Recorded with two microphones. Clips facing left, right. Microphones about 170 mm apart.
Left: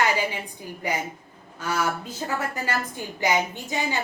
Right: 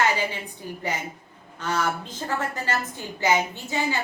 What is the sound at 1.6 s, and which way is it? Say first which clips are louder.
A woman's voice: even; 10° left (ahead or behind).